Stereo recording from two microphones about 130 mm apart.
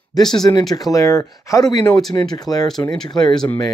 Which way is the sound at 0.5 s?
30° left (ahead or behind).